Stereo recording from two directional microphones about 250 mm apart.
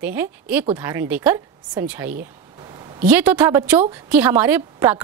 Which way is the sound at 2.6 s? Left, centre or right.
Centre.